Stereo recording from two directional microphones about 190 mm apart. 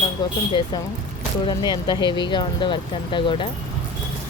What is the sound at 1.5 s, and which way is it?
Speech, 20° left (ahead or behind).